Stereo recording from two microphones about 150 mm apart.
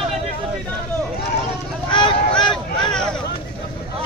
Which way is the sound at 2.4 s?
30° left (ahead or behind).